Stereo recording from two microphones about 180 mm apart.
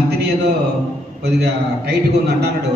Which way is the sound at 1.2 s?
65° right (ahead or behind).